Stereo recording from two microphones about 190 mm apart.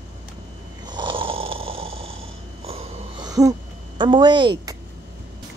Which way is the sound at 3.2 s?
20° right (ahead or behind).